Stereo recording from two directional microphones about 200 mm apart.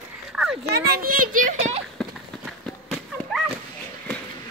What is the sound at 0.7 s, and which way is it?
A child's voice, 50° right (ahead or behind).